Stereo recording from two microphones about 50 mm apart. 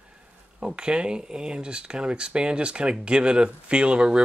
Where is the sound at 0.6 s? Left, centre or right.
Centre.